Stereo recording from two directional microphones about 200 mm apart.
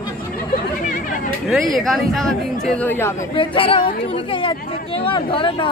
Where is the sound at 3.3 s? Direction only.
25° left (ahead or behind).